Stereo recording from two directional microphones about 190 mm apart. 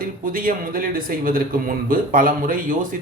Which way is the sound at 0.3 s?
50° right (ahead or behind).